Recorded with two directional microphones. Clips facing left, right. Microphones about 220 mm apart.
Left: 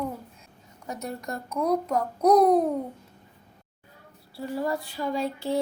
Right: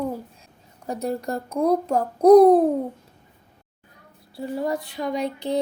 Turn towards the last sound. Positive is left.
turn(degrees=-20)  # may be behind; listen again after turning